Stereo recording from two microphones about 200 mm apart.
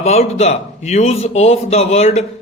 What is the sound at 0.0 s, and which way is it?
Speech, 30° left (ahead or behind).